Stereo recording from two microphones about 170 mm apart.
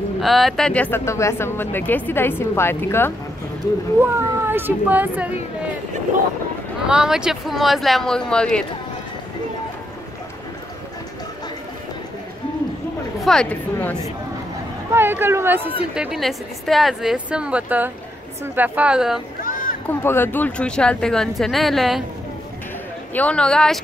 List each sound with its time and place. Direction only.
0.2 s speech: centre (ahead or behind)
4.0 s speech: 15° right (ahead or behind)
6.9 s a woman's voice: 5° right (ahead or behind)
13.2 s speech: 5° left (ahead or behind)
14.9 s a woman's voice: 15° right (ahead or behind)
19.4 s a sound: 55° left (ahead or behind)
19.9 s a woman's voice: 15° left (ahead or behind)
23.1 s a woman's voice: 5° left (ahead or behind)